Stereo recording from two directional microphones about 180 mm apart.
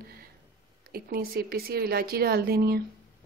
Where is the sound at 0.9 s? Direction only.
55° right (ahead or behind).